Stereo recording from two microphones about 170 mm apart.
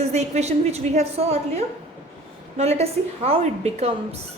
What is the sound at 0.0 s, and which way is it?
A woman's voice, 40° right (ahead or behind).